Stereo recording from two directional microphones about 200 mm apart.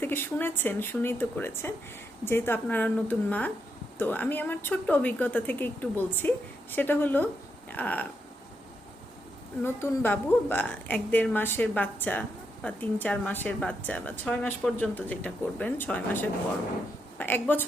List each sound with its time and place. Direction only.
0.0 s a woman's voice: 10° left (ahead or behind)
9.6 s a woman's voice: 10° left (ahead or behind)